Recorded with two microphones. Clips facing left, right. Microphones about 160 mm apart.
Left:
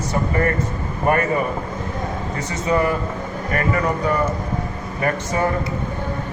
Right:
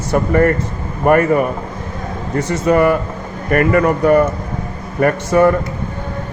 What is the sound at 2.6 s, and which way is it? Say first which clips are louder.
Speech: right 6 dB; 65° right (ahead or behind).